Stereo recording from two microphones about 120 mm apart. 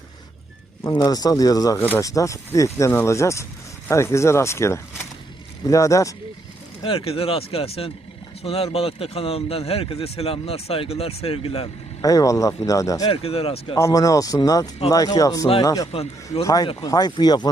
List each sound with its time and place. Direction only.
0.9 s speech: 30° left (ahead or behind)
6.8 s speech: 50° left (ahead or behind)
12.0 s speech: 30° left (ahead or behind)
13.1 s speech: 55° left (ahead or behind)
13.7 s speech: 25° left (ahead or behind)
15.9 s a man's voice: 55° left (ahead or behind)
16.4 s speech: 30° left (ahead or behind)